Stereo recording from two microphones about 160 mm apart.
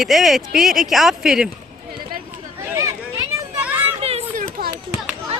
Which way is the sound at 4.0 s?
40° right (ahead or behind).